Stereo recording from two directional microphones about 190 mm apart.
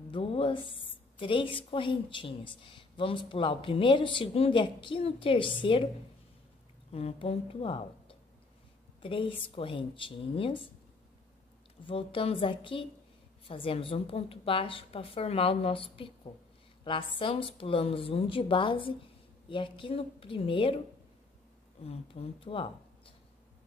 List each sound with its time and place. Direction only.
0.1 s a woman's voice: 30° left (ahead or behind)
6.9 s a woman's voice: 30° left (ahead or behind)
11.8 s a woman's voice: 30° left (ahead or behind)
21.8 s speech: 30° left (ahead or behind)